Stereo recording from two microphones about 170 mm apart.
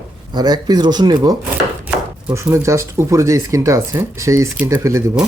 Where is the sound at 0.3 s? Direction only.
25° right (ahead or behind).